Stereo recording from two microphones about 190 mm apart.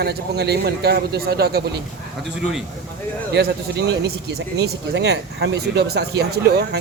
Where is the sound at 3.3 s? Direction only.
60° right (ahead or behind).